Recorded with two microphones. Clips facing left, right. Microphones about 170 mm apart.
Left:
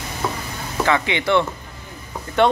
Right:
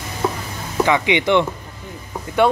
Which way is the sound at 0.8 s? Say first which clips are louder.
Right 2 dB; 15° right (ahead or behind).